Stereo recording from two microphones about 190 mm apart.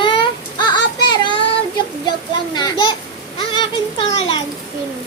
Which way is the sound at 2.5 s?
20° left (ahead or behind).